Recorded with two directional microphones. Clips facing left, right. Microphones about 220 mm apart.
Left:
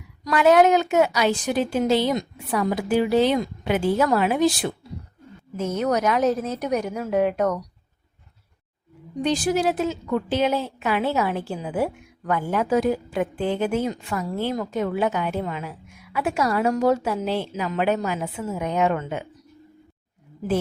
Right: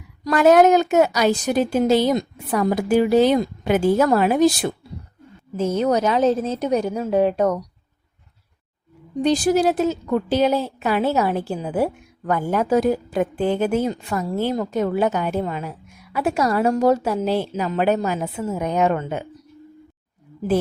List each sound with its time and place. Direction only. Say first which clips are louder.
0.3 s a woman's voice: right 3 dB; 45° right (ahead or behind)
5.5 s a woman's voice: right 4 dB; 30° right (ahead or behind)
9.2 s a woman's voice: right 4 dB; 40° right (ahead or behind)